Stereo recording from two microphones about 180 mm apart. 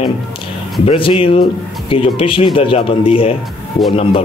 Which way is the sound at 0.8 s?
30° left (ahead or behind).